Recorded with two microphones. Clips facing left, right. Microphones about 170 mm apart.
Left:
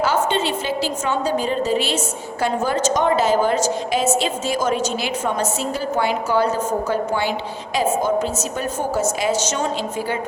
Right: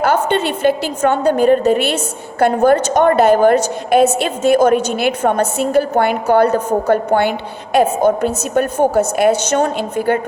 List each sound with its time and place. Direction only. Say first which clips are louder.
0.0 s a woman's voice: right 4 dB; 60° right (ahead or behind)